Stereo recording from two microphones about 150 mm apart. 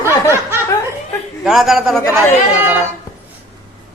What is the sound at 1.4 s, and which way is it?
Speech, centre (ahead or behind).